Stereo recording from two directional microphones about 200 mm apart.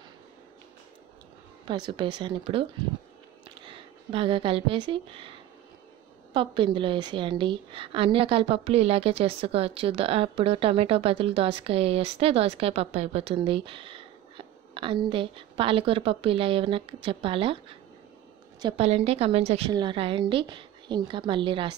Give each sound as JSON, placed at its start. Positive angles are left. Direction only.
{"t": 1.7, "sound": "a woman's voice", "side_deg": -25}
{"t": 6.3, "sound": "a woman's voice", "side_deg": -25}
{"t": 18.6, "sound": "a woman's voice", "side_deg": -25}